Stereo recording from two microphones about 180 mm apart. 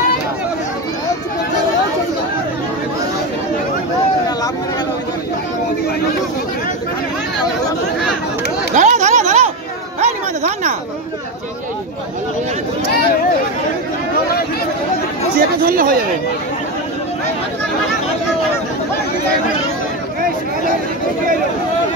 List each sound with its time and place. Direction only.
8.7 s a sound: 40° right (ahead or behind)
9.9 s music: 40° right (ahead or behind)
15.3 s speech: 55° right (ahead or behind)